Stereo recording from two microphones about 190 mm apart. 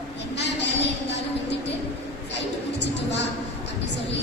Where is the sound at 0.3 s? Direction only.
65° left (ahead or behind).